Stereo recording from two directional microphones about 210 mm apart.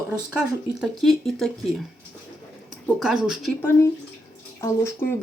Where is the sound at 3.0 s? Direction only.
5° right (ahead or behind).